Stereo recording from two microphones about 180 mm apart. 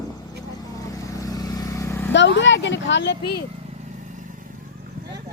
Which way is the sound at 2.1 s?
85° left.